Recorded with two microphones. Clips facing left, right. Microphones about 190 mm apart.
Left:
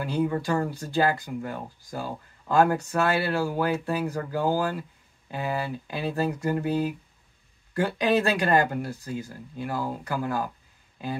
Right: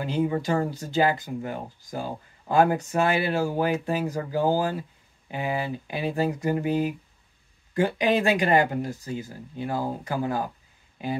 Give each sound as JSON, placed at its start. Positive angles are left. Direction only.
{"t": 0.0, "sound": "speech", "side_deg": -20}